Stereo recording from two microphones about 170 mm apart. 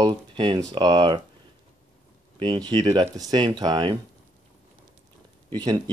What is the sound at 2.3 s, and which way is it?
Speech, 25° right (ahead or behind).